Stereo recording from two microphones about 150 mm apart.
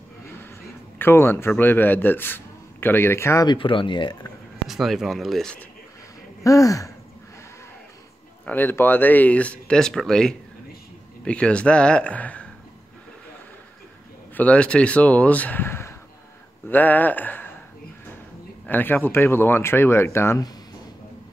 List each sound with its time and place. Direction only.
0.9 s speech: 15° left (ahead or behind)
3.4 s speech: 35° left (ahead or behind)
4.6 s speech: centre (ahead or behind)
6.4 s speech: 20° left (ahead or behind)
8.5 s speech: 15° left (ahead or behind)
14.3 s speech: 10° left (ahead or behind)
18.7 s speech: 15° left (ahead or behind)